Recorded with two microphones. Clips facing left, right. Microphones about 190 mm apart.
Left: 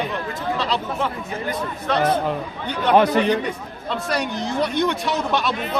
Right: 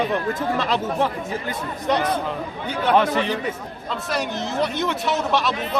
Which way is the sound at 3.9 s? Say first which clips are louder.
Left 2 dB; centre (ahead or behind).